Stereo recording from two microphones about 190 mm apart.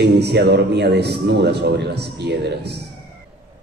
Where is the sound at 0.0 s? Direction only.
60° right (ahead or behind).